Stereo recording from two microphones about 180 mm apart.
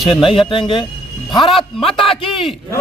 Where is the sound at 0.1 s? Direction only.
30° left (ahead or behind).